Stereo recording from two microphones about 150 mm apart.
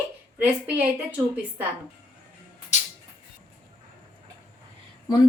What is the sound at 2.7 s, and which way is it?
Music, 50° left (ahead or behind).